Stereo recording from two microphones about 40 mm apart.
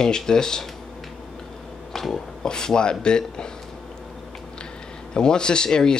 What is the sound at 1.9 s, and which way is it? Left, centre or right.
Speech, centre.